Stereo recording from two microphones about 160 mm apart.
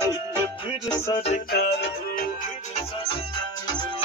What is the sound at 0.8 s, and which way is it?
Music, 25° left (ahead or behind).